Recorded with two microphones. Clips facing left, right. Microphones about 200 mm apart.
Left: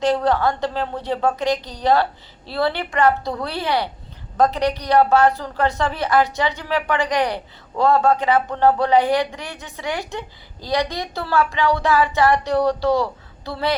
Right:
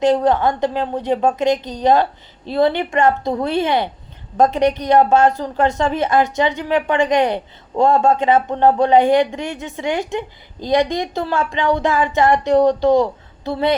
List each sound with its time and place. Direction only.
0.0 s a man's voice: 20° right (ahead or behind)